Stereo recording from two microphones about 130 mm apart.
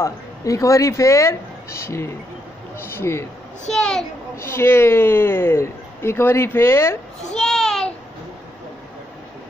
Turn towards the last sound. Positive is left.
turn(degrees=5)  # may be behind; listen again after turning